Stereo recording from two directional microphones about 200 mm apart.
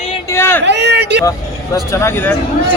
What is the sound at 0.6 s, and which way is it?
Speech, 60° right (ahead or behind).